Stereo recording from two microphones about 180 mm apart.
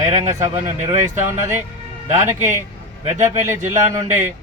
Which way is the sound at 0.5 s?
40° right (ahead or behind).